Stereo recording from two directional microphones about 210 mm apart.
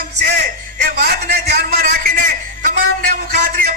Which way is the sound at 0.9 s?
50° right (ahead or behind).